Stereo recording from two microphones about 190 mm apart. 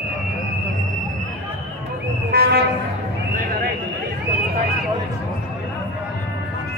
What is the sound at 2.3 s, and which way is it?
Vehicle, 55° right (ahead or behind).